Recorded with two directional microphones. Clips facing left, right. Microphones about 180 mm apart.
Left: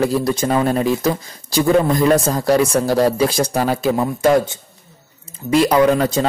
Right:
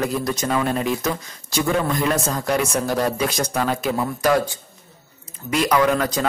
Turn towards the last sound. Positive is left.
turn(degrees=25)  # may be behind; listen again after turning